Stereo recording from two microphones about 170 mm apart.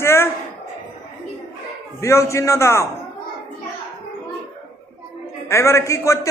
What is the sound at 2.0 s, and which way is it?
Speech, 15° left (ahead or behind).